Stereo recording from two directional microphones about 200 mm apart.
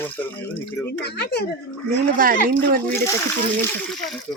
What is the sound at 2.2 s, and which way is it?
Speech, 45° right (ahead or behind).